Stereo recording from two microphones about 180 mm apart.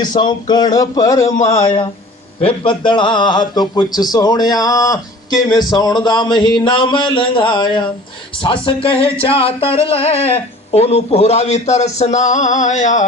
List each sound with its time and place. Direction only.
0.0 s a man's voice: 25° left (ahead or behind)
2.4 s a man's voice: 30° left (ahead or behind); by 13.1 s 45° left (ahead or behind)